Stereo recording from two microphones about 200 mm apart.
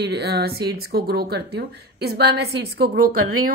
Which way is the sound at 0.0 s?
55° right (ahead or behind).